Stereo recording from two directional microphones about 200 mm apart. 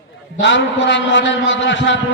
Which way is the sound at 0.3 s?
65° left (ahead or behind).